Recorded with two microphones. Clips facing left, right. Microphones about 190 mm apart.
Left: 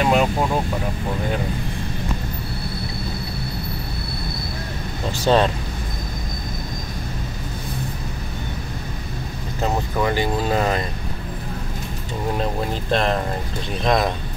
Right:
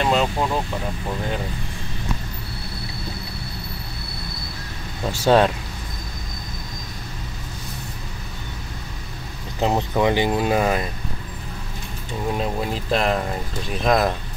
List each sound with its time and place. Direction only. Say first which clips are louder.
0.0 s vehicle: left 2 dB; 10° left (ahead or behind)
5.1 s speech: right 1 dB; 10° right (ahead or behind)
9.6 s speech: right 2 dB; 20° right (ahead or behind)
12.4 s speech: left 1 dB; 5° right (ahead or behind)